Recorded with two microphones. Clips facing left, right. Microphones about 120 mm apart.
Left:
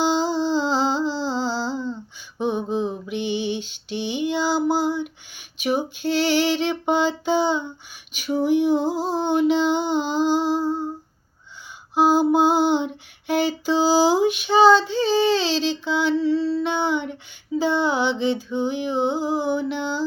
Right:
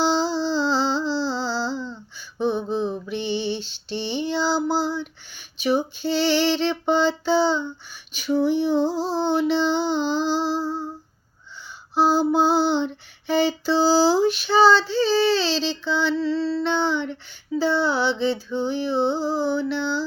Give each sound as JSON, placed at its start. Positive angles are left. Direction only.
{"t": 0.0, "sound": "music", "side_deg": 15}
{"t": 2.4, "sound": "a sound", "side_deg": 15}
{"t": 5.6, "sound": "female singing", "side_deg": 10}
{"t": 9.5, "sound": "music", "side_deg": 15}
{"t": 11.9, "sound": "female singing", "side_deg": 15}